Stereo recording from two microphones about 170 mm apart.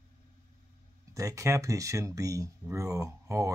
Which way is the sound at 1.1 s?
20° right (ahead or behind).